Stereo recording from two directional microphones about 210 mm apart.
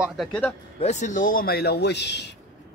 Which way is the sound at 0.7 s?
35° left (ahead or behind).